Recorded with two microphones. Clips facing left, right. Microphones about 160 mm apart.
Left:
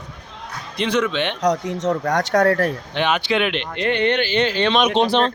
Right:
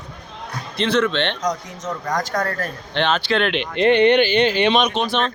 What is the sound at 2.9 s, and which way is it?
Speech, 10° left (ahead or behind).